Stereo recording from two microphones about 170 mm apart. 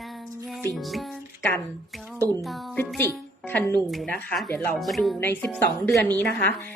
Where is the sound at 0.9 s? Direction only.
10° left (ahead or behind).